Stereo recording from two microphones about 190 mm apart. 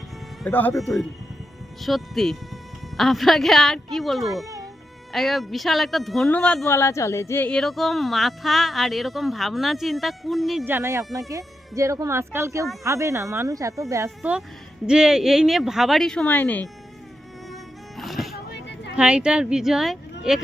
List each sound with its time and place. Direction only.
0.4 s speech: 5° left (ahead or behind)
10.7 s speech: 15° right (ahead or behind)
14.2 s speech: 5° right (ahead or behind)
17.5 s music: centre (ahead or behind)
18.3 s a sound: 60° left (ahead or behind)
18.9 s speech: 5° right (ahead or behind)